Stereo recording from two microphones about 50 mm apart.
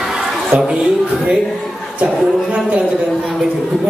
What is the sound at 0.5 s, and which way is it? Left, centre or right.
Speech, right.